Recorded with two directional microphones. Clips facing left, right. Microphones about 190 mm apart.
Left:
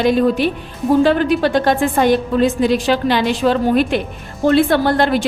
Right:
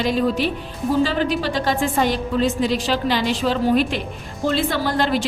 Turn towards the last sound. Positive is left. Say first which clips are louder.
# left 6 dB
turn(degrees=60)  # may be behind; listen again after turning